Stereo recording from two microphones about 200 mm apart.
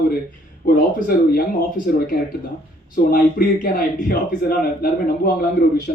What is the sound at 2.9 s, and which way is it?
A man's voice, 45° left (ahead or behind).